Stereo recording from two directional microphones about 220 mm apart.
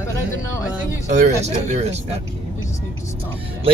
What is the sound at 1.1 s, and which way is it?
Speech, 30° right (ahead or behind).